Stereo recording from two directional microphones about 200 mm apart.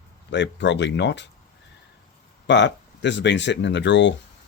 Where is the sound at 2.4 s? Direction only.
60° left (ahead or behind).